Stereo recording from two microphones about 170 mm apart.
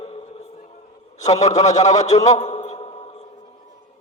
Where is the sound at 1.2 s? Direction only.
45° left (ahead or behind).